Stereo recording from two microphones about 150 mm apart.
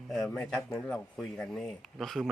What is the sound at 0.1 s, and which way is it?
Speech, 5° left (ahead or behind).